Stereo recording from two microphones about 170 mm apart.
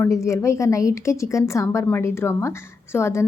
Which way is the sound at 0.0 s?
15° left (ahead or behind).